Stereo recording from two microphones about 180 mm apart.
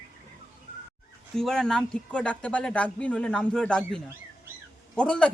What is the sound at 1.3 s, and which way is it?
Speech, 5° left (ahead or behind).